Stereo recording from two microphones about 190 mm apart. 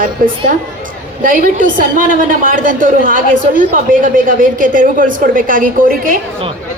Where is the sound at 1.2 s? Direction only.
45° right (ahead or behind).